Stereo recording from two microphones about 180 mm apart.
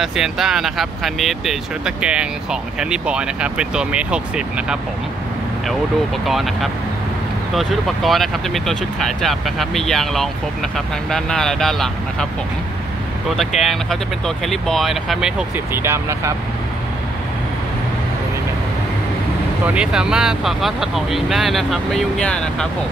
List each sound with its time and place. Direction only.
0.0 s speech: centre (ahead or behind)
6.2 s speech: centre (ahead or behind)
13.4 s speech: centre (ahead or behind)
19.6 s speech: 5° right (ahead or behind)